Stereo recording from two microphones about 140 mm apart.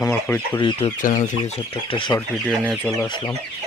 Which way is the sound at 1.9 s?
35° left (ahead or behind).